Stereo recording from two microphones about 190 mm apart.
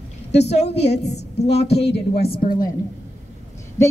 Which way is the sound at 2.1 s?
55° left (ahead or behind).